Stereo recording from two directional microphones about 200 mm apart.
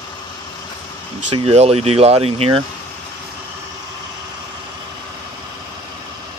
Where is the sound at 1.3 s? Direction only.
30° right (ahead or behind).